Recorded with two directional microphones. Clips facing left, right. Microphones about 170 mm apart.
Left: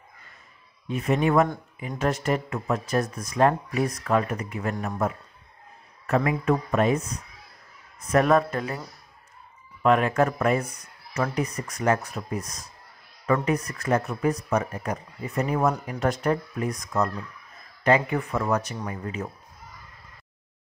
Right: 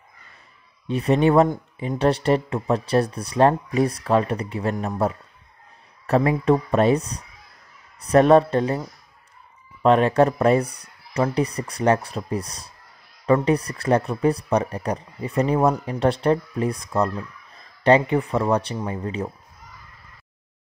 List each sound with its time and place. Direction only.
0.8 s speech: 30° right (ahead or behind)